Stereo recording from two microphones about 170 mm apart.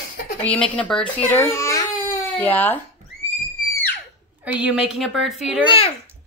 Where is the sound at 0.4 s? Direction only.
10° left (ahead or behind).